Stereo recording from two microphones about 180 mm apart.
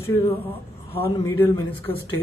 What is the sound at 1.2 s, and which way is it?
Speech, 15° left (ahead or behind).